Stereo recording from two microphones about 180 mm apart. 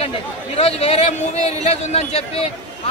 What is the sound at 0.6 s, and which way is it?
A man's voice, 35° left (ahead or behind).